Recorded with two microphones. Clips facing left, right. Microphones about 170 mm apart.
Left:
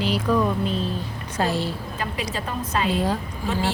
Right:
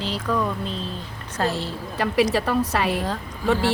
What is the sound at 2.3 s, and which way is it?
Speech, 70° right (ahead or behind).